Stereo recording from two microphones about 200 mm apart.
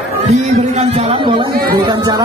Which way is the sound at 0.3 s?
35° right (ahead or behind).